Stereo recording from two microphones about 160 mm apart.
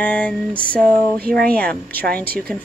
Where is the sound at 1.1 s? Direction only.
70° right (ahead or behind).